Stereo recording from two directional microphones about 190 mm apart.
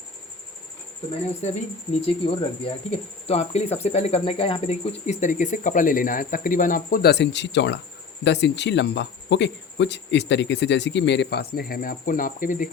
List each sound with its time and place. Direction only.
1.4 s speech: 35° left (ahead or behind)